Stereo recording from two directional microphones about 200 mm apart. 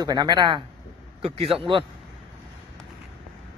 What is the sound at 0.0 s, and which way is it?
Speech, 20° right (ahead or behind).